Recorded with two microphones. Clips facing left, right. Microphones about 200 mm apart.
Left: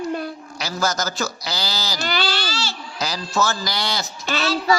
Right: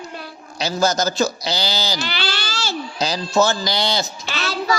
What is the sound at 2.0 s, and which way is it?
Speech, 45° left (ahead or behind).